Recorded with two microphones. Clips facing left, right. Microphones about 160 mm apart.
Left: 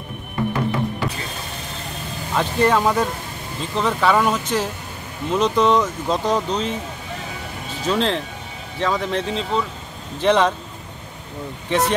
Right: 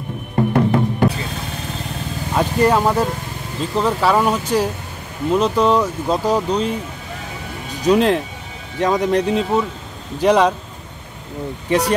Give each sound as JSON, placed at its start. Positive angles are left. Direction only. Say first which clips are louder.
{"t": 0.5, "sound": "music", "louder": "right 6 dB", "side_deg": -55}
{"t": 2.3, "sound": "speech", "louder": "right 2 dB", "side_deg": -10}
{"t": 7.8, "sound": "speech", "louder": "right 6 dB", "side_deg": -15}